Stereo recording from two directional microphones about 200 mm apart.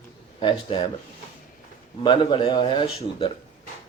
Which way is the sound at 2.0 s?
25° left (ahead or behind).